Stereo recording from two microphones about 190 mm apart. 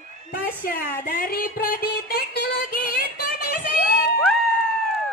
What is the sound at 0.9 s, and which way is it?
Music, 50° left (ahead or behind).